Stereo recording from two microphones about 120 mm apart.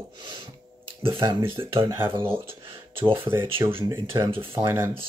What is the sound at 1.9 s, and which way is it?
Speech, 20° right (ahead or behind).